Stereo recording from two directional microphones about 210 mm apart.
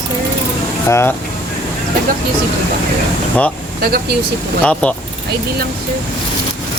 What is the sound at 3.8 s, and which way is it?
Speech, 50° right (ahead or behind).